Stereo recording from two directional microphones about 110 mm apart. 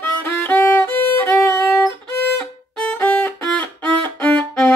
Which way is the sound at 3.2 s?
15° left (ahead or behind).